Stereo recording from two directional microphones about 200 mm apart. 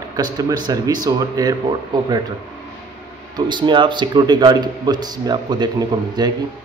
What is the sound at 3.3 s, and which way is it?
A man's voice, 25° right (ahead or behind).